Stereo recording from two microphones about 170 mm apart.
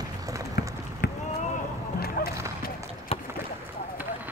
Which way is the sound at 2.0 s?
65° left (ahead or behind).